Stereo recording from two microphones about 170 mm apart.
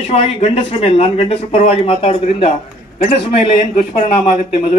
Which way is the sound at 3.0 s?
50° left (ahead or behind).